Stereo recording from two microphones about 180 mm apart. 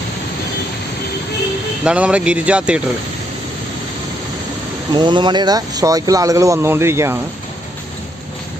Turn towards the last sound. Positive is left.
turn(degrees=-15)  # may be behind; listen again after turning